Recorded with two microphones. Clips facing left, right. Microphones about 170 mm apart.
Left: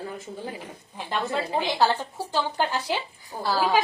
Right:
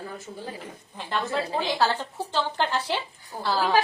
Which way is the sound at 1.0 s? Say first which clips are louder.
Even; 15° left (ahead or behind).